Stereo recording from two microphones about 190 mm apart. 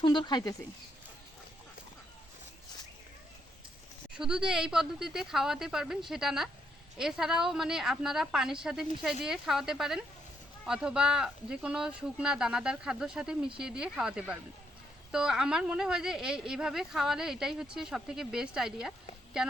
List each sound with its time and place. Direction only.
0.0 s speech: 25° left (ahead or behind)
4.1 s speech: 5° right (ahead or behind)